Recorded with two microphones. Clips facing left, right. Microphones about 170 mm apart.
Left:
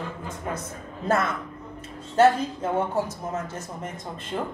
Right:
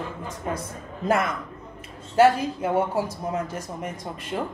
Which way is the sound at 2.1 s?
10° right (ahead or behind).